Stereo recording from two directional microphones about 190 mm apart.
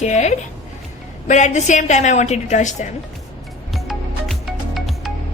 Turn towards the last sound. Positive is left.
turn(degrees=0)  # may be behind; listen again after turning